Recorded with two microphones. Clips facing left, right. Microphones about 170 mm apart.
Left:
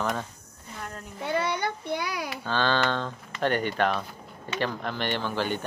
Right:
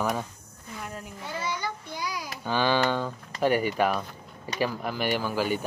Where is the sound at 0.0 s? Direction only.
10° right (ahead or behind).